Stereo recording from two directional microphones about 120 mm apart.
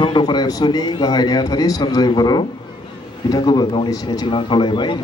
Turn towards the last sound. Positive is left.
turn(degrees=40)  # may be behind; listen again after turning